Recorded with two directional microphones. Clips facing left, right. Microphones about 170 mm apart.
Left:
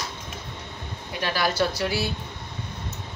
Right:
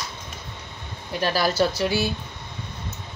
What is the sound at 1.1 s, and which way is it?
Speech, 35° right (ahead or behind).